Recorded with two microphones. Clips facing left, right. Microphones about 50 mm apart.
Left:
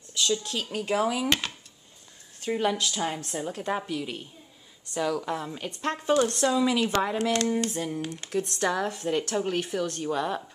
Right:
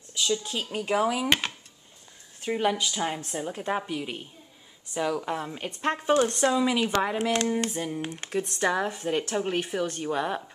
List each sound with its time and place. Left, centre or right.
0.1 s a woman's voice: centre
8.0 s a woman's voice: right